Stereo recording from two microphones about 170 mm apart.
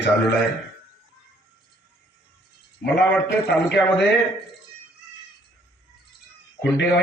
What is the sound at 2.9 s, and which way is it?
Speech, 85° left.